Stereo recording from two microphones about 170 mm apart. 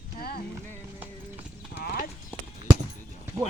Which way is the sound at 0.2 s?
65° left (ahead or behind).